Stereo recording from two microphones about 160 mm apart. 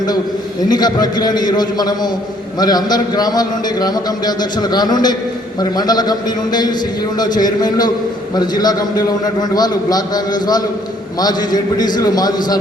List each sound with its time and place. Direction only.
0.7 s a man's voice: 25° left (ahead or behind)